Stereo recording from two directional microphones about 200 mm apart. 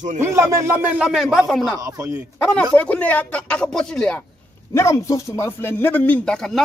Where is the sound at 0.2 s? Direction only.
15° right (ahead or behind).